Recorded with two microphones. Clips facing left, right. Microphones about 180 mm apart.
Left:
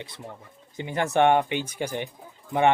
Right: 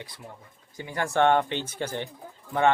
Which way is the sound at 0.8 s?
20° left (ahead or behind).